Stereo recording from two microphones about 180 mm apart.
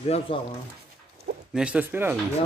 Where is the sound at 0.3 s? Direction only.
30° left (ahead or behind).